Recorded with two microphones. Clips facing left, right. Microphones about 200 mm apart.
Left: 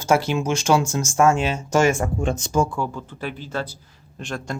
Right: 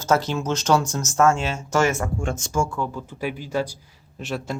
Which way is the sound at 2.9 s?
10° right (ahead or behind).